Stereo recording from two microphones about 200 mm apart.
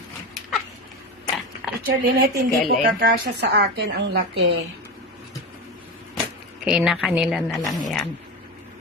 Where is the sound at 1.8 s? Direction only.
50° right (ahead or behind).